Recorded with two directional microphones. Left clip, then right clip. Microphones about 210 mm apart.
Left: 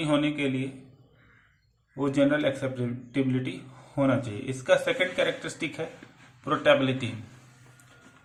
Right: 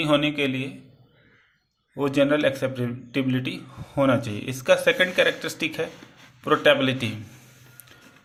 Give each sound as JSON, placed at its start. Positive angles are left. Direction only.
{"t": 0.0, "sound": "a man's voice", "side_deg": -35}
{"t": 2.0, "sound": "a man's voice", "side_deg": -35}